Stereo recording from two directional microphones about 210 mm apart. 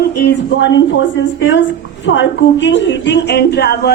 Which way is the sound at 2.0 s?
60° left (ahead or behind).